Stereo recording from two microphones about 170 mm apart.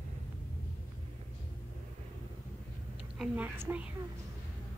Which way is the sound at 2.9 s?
5° right (ahead or behind).